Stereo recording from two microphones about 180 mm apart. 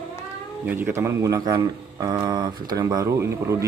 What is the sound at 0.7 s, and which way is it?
Speech, 15° right (ahead or behind).